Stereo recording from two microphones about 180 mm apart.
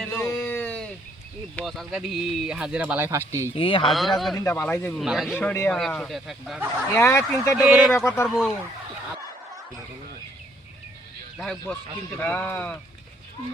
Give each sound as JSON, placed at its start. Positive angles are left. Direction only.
{"t": 0.1, "sound": "a sound", "side_deg": 15}
{"t": 1.5, "sound": "speech", "side_deg": 0}
{"t": 3.5, "sound": "speech", "side_deg": 30}
{"t": 3.8, "sound": "speech", "side_deg": 0}
{"t": 4.4, "sound": "speech", "side_deg": 15}
{"t": 4.9, "sound": "speech", "side_deg": 0}
{"t": 6.9, "sound": "speech", "side_deg": 15}
{"t": 7.6, "sound": "speech", "side_deg": 0}
{"t": 7.9, "sound": "speech", "side_deg": 15}
{"t": 8.3, "sound": "speech", "side_deg": 0}
{"t": 11.6, "sound": "speech", "side_deg": 10}